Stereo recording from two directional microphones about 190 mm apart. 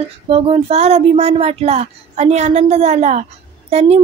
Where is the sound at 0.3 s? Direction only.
30° right (ahead or behind).